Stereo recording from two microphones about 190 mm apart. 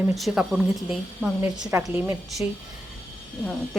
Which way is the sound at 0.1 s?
Centre (ahead or behind).